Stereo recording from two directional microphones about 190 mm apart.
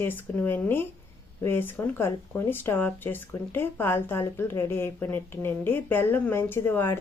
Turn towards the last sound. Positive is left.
turn(degrees=10)  # may be behind; listen again after turning